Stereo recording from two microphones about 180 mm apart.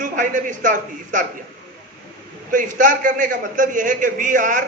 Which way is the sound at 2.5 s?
45° right (ahead or behind).